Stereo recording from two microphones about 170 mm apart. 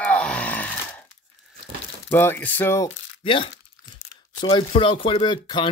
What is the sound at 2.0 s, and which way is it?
Speech, 15° left (ahead or behind).